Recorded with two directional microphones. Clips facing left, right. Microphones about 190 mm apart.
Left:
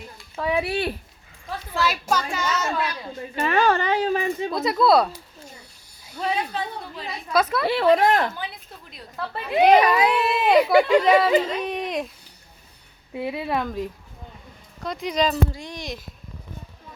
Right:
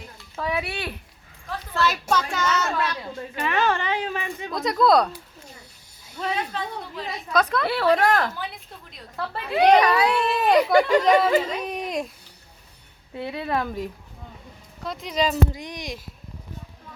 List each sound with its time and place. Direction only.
0.3 s speech: 10° left (ahead or behind)
0.6 s a woman's voice: 35° left (ahead or behind)
1.7 s speech: 10° left (ahead or behind)
3.3 s a woman's voice: 35° left (ahead or behind)
4.5 s speech: 5° left (ahead or behind)
6.1 s speech: 5° left (ahead or behind)
7.7 s speech: 25° left (ahead or behind)
9.6 s speech: 10° left (ahead or behind)
13.1 s speech: 15° left (ahead or behind)
13.6 s speech: centre (ahead or behind)
14.8 s speech: centre (ahead or behind)
15.5 s speech: 15° right (ahead or behind)